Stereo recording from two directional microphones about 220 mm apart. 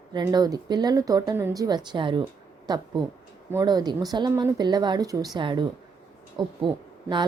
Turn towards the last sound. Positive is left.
turn(degrees=-20)  # may be behind; listen again after turning